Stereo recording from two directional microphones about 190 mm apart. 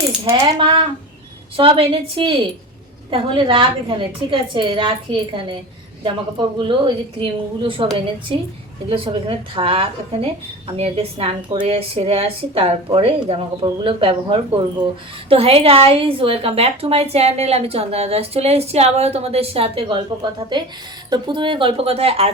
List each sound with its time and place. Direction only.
0.3 s a woman's voice: 20° right (ahead or behind)
21.1 s a woman's voice: 25° right (ahead or behind)